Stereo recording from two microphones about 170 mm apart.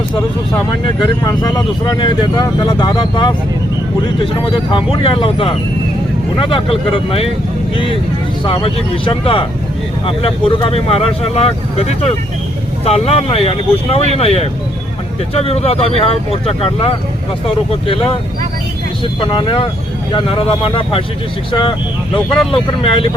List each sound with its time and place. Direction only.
1.0 s speech: 25° left (ahead or behind)
4.7 s speech: 30° left (ahead or behind)
8.4 s speech: 30° left (ahead or behind)